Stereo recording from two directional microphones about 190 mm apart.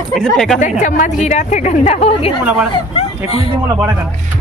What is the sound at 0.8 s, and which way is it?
A woman's voice, 40° left (ahead or behind).